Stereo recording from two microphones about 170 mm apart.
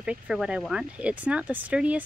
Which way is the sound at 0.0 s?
5° right (ahead or behind).